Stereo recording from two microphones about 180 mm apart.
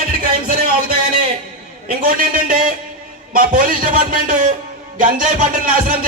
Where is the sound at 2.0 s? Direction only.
50° right (ahead or behind).